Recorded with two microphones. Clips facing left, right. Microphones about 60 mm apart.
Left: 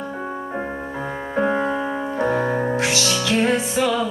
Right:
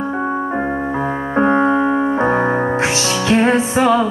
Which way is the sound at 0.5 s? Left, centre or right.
Right.